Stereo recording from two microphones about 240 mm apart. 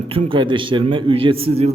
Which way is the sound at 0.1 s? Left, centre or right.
Right.